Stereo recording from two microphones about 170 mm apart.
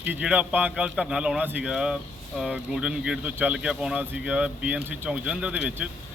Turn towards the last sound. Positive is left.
turn(degrees=-5)  # may be behind; listen again after turning